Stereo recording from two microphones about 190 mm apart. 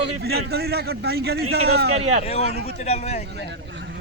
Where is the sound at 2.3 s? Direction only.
35° left (ahead or behind).